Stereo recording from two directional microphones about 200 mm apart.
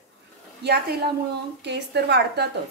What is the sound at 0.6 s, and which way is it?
A woman's voice, 55° right (ahead or behind).